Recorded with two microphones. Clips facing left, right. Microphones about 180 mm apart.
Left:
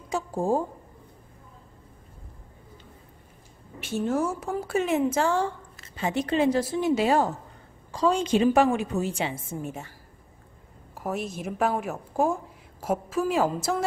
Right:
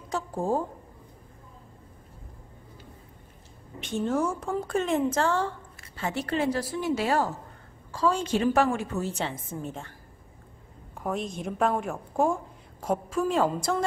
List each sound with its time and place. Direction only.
0.1 s a sound: 10° left (ahead or behind)
3.8 s a woman's voice: 5° left (ahead or behind)
11.0 s a woman's voice: 5° left (ahead or behind)